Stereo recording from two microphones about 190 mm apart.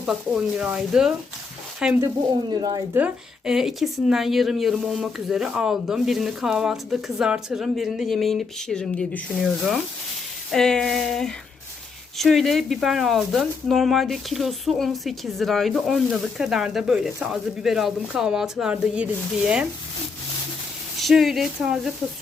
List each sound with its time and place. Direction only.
0.0 s speech: 5° right (ahead or behind)
2.0 s speech: 20° right (ahead or behind)
2.9 s speech: 5° right (ahead or behind)
21.0 s speech: centre (ahead or behind)